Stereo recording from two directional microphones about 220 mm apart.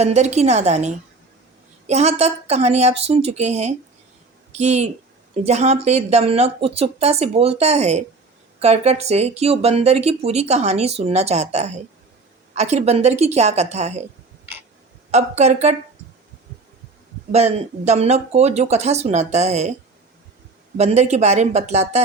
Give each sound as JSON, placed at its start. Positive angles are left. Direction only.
{"t": 0.0, "sound": "a woman's voice", "side_deg": -30}
{"t": 15.1, "sound": "a woman's voice", "side_deg": -30}
{"t": 17.3, "sound": "speech", "side_deg": -30}
{"t": 20.7, "sound": "speech", "side_deg": -30}